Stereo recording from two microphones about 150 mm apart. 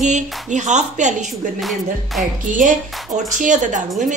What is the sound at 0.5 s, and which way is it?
Speech, 50° right (ahead or behind).